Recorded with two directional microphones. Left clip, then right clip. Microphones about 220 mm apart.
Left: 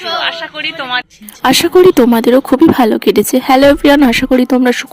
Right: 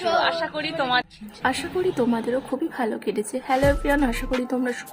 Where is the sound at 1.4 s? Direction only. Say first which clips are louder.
Left 17 dB; 45° left (ahead or behind).